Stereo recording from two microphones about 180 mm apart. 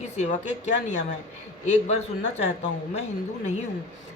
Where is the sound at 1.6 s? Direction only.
40° left (ahead or behind).